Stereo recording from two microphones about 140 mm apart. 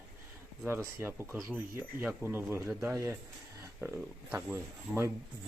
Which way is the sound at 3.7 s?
10° right (ahead or behind).